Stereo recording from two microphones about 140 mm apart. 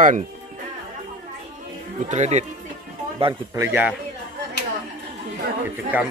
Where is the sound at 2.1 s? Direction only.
55° right (ahead or behind).